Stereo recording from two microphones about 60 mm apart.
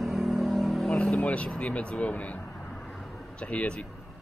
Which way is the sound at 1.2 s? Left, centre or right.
Left.